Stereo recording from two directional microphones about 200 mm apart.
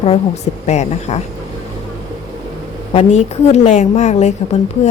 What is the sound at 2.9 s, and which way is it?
A woman's voice, 35° left (ahead or behind).